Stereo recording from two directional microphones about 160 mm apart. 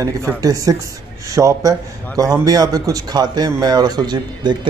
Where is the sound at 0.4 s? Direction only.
25° right (ahead or behind).